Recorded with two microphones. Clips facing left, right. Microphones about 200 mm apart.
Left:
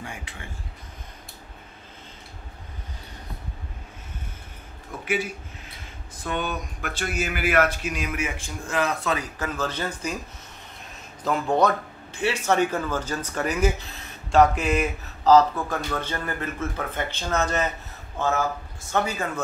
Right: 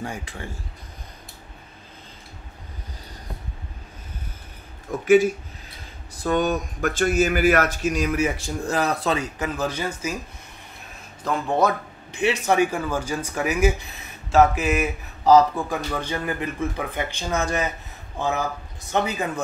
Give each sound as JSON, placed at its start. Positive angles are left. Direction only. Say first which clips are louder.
{"t": 0.0, "sound": "speech", "louder": "right 6 dB", "side_deg": -40}
{"t": 5.0, "sound": "speech", "louder": "right 12 dB", "side_deg": -45}
{"t": 9.4, "sound": "speech", "louder": "right 2 dB", "side_deg": -15}
{"t": 11.2, "sound": "speech", "louder": "even", "side_deg": -5}
{"t": 12.1, "sound": "speech", "louder": "right 2 dB", "side_deg": -15}
{"t": 18.9, "sound": "speech", "louder": "right 2 dB", "side_deg": -20}